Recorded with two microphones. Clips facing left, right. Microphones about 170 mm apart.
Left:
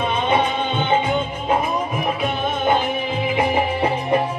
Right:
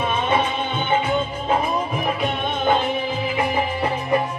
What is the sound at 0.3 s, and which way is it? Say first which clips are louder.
Music: left 2 dB; 20° left (ahead or behind).